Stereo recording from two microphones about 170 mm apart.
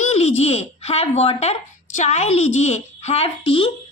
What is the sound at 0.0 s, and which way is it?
A woman's voice, 40° left (ahead or behind).